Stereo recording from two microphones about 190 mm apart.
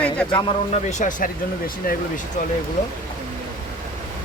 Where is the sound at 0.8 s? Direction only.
40° left (ahead or behind).